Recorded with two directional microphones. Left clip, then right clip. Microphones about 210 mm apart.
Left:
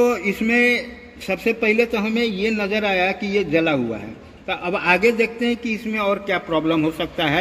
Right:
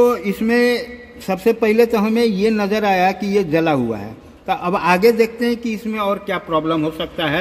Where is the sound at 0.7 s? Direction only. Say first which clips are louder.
Right 1 dB; 20° right (ahead or behind).